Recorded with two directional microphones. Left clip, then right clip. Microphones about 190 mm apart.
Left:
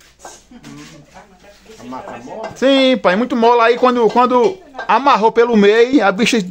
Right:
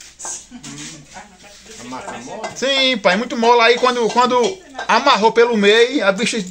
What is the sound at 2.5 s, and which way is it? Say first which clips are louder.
Speech: left 4 dB; 50° left (ahead or behind).